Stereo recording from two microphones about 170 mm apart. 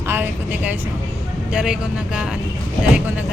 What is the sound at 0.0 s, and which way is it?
Vehicle, 15° right (ahead or behind).